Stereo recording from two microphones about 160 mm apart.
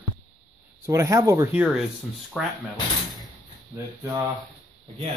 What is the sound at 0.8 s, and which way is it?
Speech, 20° right (ahead or behind).